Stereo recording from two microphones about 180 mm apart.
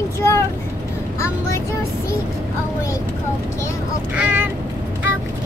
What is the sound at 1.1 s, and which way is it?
Vehicle, 15° left (ahead or behind).